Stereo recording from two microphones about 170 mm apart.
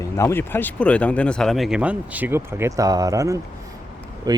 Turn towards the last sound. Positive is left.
turn(degrees=-20)  # may be behind; listen again after turning